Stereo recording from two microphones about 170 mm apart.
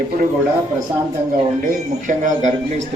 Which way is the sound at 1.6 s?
50° right (ahead or behind).